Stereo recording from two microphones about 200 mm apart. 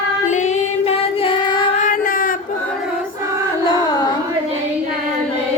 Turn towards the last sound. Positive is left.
turn(degrees=20)  # may be behind; listen again after turning